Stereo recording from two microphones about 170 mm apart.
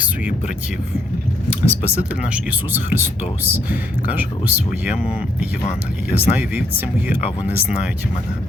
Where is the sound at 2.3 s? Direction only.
10° right (ahead or behind).